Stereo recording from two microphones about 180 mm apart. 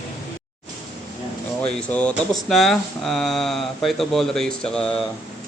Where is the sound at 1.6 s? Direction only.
5° left (ahead or behind).